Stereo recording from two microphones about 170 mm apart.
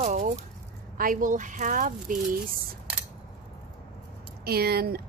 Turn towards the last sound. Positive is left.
turn(degrees=-65)  # may be behind; listen again after turning